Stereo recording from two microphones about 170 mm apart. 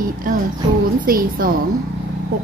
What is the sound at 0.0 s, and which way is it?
A woman's voice, 55° right (ahead or behind).